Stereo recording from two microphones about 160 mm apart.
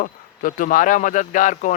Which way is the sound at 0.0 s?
55° left (ahead or behind).